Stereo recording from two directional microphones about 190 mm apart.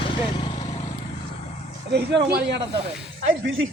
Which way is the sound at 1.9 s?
60° right (ahead or behind).